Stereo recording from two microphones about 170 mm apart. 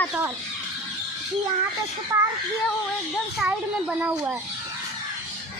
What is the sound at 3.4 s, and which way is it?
Speech, 10° right (ahead or behind).